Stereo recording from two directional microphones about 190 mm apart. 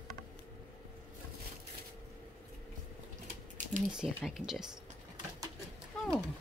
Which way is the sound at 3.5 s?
40° right (ahead or behind).